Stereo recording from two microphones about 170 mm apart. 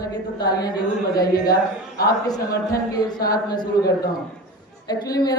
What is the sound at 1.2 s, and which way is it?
Speech, 60° left (ahead or behind).